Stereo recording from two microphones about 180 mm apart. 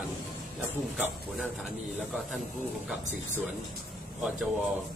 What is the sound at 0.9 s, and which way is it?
Speech, 5° right (ahead or behind).